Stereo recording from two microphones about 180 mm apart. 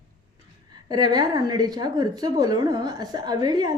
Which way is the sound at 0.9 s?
20° right (ahead or behind).